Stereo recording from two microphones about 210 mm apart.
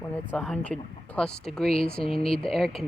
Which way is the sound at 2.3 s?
Centre (ahead or behind).